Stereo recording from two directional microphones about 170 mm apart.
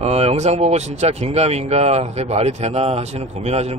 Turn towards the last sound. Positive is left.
turn(degrees=-40)  # may be behind; listen again after turning